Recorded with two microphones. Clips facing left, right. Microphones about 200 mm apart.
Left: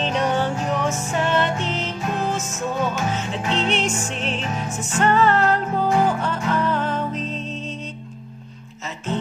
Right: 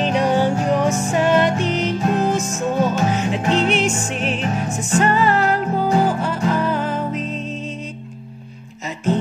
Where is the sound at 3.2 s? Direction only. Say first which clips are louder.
Right 5 dB; 15° right (ahead or behind).